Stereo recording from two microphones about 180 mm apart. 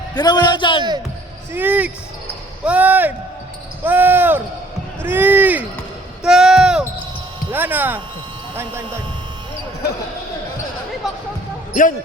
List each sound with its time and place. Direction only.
0.1 s a man's voice: 25° left (ahead or behind)
1.5 s speech: 10° right (ahead or behind)
6.2 s a sound: 5° right (ahead or behind)
7.5 s speech: 10° right (ahead or behind)
11.7 s speech: 50° left (ahead or behind)